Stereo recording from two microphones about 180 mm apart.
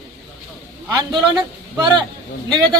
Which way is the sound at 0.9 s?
25° right (ahead or behind).